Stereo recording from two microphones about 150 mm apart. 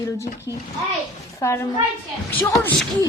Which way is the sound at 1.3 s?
15° left (ahead or behind).